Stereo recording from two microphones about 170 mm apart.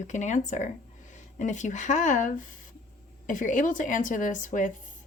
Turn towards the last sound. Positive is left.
turn(degrees=50)  # may be behind; listen again after turning